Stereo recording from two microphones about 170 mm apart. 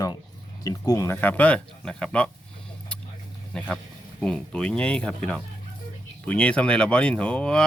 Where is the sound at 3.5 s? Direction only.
5° left (ahead or behind).